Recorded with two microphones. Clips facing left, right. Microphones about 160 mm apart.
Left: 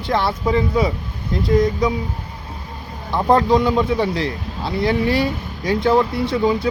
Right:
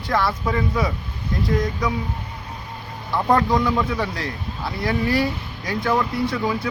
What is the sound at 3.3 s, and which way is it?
Speech, 25° left (ahead or behind).